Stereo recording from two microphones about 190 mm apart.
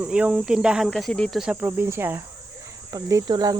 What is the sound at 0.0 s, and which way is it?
Speech, 5° right (ahead or behind).